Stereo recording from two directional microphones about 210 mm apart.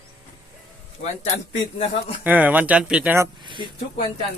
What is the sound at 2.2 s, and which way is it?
Speech, 10° right (ahead or behind).